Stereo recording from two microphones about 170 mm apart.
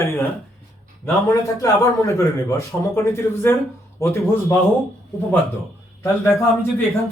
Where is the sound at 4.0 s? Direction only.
15° left (ahead or behind).